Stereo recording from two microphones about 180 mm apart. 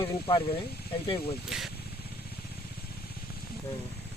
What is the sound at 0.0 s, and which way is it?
Speech, 30° left (ahead or behind).